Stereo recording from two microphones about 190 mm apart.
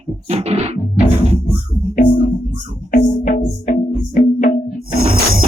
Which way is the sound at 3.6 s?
45° left (ahead or behind).